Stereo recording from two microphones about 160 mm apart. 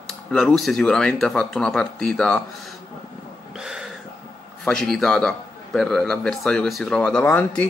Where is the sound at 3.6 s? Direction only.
5° right (ahead or behind).